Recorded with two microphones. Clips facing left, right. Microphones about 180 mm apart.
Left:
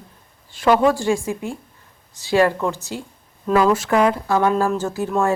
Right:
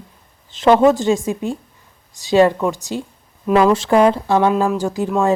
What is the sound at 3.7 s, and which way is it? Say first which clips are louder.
A woman's voice: right 4 dB; 30° right (ahead or behind).